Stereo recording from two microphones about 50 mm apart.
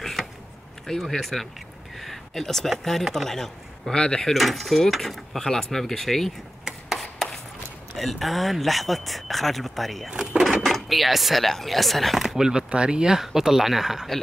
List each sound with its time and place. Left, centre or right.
0.0 s a sound: centre
0.8 s speech: centre
4.3 s speech: centre
6.9 s a sound: centre
7.9 s speech: centre
10.1 s drawer open or close: centre
10.4 s speech: centre
12.4 s speech: centre